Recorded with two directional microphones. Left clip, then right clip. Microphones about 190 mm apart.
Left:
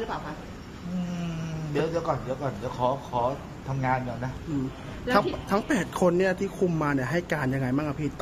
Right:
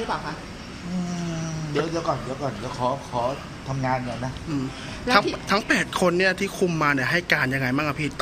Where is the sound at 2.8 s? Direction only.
5° left (ahead or behind).